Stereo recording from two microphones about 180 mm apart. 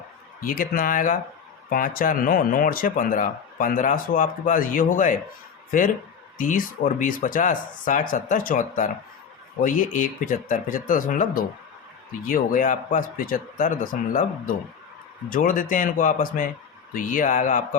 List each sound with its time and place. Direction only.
0.4 s speech: 50° left (ahead or behind)